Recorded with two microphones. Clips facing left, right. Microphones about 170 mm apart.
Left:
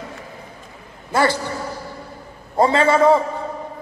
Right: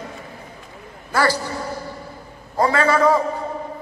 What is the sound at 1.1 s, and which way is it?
Speech, 25° left (ahead or behind).